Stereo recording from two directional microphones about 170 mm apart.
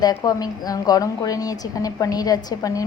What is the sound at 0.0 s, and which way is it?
A woman's voice, 20° left (ahead or behind).